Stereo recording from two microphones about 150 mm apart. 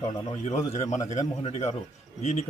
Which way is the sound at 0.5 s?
50° left (ahead or behind).